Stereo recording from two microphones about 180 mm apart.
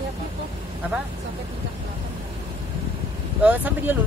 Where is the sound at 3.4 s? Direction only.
10° right (ahead or behind).